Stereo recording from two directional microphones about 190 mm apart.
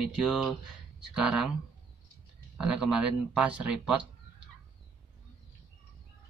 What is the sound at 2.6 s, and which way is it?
Speech, 5° right (ahead or behind).